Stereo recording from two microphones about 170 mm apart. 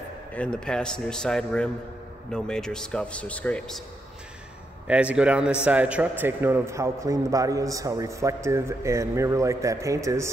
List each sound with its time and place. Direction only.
0.3 s a man's voice: 5° left (ahead or behind)
4.8 s a man's voice: 5° right (ahead or behind)